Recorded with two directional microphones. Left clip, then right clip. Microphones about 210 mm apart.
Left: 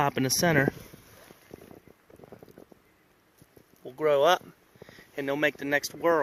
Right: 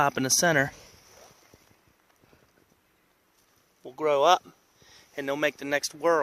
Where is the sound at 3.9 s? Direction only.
10° right (ahead or behind).